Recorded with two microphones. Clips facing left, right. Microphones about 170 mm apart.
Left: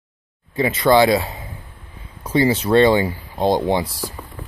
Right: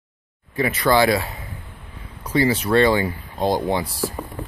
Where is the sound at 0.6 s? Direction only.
25° left (ahead or behind).